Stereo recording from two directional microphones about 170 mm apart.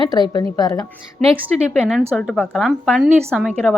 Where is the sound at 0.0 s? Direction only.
25° left (ahead or behind).